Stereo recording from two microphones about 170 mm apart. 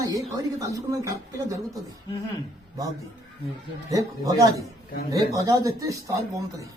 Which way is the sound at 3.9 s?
20° right (ahead or behind).